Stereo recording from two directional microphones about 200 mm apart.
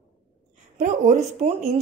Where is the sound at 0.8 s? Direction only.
35° right (ahead or behind).